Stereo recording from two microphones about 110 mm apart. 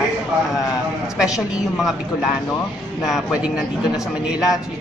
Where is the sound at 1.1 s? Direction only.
5° right (ahead or behind).